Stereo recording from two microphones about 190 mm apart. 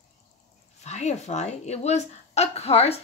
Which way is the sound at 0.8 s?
35° left (ahead or behind).